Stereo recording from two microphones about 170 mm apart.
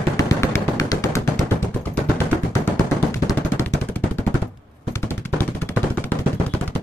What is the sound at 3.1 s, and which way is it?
Machine gun, 15° left (ahead or behind).